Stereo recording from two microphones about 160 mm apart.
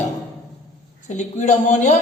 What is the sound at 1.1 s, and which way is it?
Speech, 50° left (ahead or behind).